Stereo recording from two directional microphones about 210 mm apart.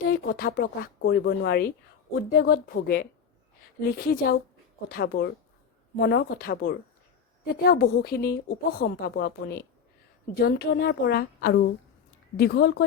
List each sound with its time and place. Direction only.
0.0 s a woman's voice: 45° left (ahead or behind)